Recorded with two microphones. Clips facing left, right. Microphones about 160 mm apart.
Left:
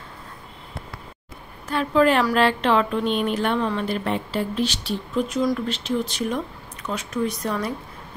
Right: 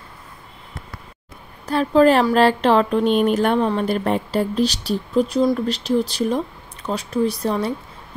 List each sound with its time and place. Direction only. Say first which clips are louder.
1.7 s speech: right 4 dB; 35° right (ahead or behind)